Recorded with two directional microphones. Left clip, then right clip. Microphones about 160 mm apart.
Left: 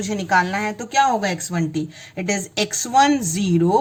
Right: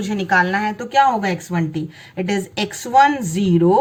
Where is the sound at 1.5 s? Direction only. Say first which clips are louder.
Right 2 dB; 55° left (ahead or behind).